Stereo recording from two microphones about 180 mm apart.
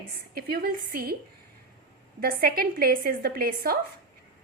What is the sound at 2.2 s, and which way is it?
A woman's voice, 55° right (ahead or behind).